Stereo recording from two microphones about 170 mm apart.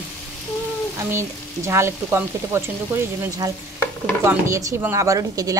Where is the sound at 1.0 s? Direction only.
15° right (ahead or behind).